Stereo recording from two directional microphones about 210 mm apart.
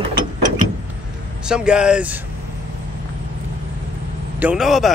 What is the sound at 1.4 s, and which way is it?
Speech, 5° right (ahead or behind).